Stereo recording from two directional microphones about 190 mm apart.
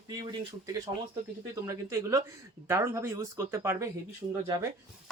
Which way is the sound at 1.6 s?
15° right (ahead or behind).